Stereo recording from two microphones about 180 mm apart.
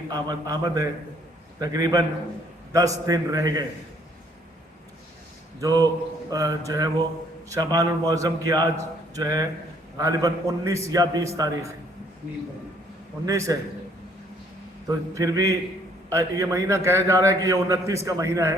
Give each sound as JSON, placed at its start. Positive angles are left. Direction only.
{"t": 0.1, "sound": "a man's voice", "side_deg": -20}
{"t": 5.5, "sound": "a man's voice", "side_deg": -20}
{"t": 13.2, "sound": "a man's voice", "side_deg": -20}
{"t": 14.8, "sound": "a man's voice", "side_deg": -20}